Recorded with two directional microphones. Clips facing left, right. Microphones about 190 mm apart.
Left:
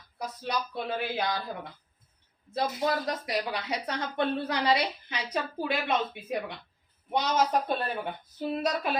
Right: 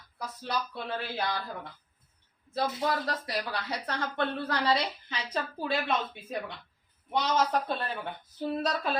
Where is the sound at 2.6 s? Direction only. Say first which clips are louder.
Left 1 dB; 20° left (ahead or behind).